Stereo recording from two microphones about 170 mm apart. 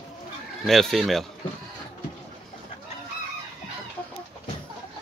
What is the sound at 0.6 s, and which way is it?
Speech, centre (ahead or behind).